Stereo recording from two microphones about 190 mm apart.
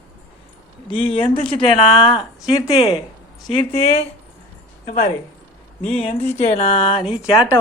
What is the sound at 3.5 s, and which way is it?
Speech, 30° left (ahead or behind).